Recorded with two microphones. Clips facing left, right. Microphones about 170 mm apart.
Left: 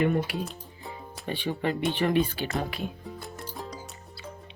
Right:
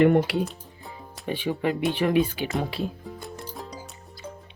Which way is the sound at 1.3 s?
5° right (ahead or behind).